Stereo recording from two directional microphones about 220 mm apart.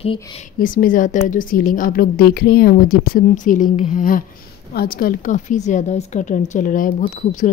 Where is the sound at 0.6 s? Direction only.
40° left (ahead or behind).